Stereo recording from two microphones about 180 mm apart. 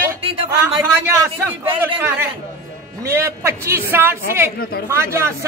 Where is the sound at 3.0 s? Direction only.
15° right (ahead or behind).